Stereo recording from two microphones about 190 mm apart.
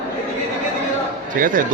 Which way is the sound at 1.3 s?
45° right (ahead or behind).